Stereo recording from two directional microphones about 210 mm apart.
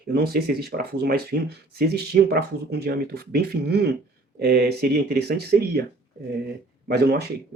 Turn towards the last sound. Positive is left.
turn(degrees=-50)  # may be behind; listen again after turning